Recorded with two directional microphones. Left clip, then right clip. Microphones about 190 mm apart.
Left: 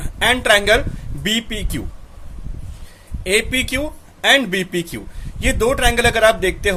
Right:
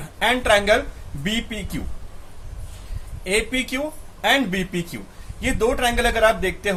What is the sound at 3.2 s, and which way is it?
Speech, 45° left (ahead or behind).